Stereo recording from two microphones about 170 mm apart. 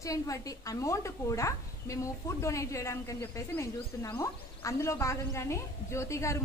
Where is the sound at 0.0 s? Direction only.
20° left (ahead or behind).